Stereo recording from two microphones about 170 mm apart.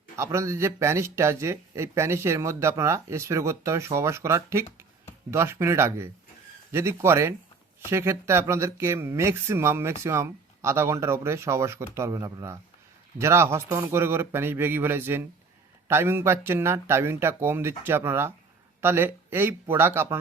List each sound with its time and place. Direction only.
0.2 s speech: 15° right (ahead or behind)